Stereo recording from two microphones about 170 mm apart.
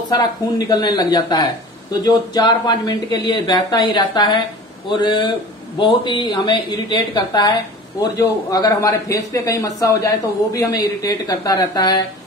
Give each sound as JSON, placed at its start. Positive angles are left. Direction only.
{"t": 0.1, "sound": "speech", "side_deg": 20}